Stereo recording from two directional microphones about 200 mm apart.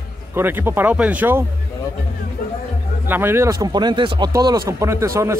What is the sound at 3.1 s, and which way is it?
Speech, 10° right (ahead or behind).